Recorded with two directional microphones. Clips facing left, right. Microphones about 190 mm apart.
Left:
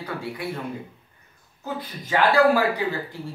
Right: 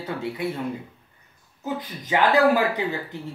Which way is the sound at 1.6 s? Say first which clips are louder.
Right 2 dB; 20° right (ahead or behind).